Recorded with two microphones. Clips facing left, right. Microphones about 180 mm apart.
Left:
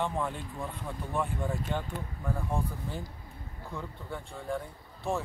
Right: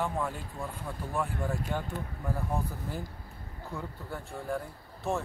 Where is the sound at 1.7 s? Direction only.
10° right (ahead or behind).